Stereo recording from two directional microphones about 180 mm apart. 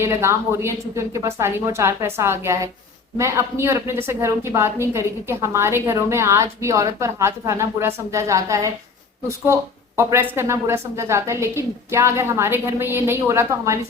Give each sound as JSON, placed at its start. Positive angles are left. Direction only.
{"t": 0.0, "sound": "a woman's voice", "side_deg": -15}
{"t": 10.0, "sound": "a woman's voice", "side_deg": -10}